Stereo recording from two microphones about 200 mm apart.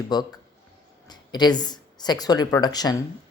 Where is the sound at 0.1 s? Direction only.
20° left (ahead or behind).